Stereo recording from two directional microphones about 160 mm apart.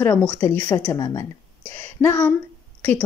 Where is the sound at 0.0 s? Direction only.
10° left (ahead or behind).